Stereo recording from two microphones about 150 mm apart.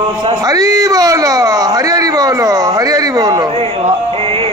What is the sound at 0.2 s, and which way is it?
Speech, 25° right (ahead or behind).